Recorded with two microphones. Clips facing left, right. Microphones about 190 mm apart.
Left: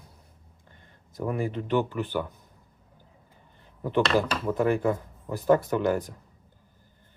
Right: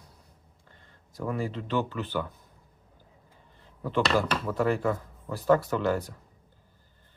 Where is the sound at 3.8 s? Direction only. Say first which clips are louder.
Left 2 dB; 20° left (ahead or behind).